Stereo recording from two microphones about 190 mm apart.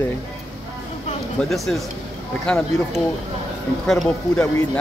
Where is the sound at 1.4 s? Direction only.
Centre (ahead or behind).